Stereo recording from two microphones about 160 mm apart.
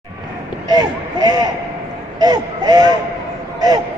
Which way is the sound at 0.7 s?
25° right (ahead or behind).